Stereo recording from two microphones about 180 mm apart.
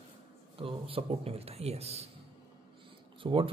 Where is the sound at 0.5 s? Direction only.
30° right (ahead or behind).